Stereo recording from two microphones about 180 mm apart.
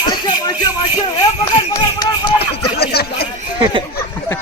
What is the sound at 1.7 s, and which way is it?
Speech, 20° left (ahead or behind).